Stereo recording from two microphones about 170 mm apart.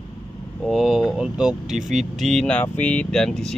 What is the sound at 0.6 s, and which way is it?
Speech, centre (ahead or behind).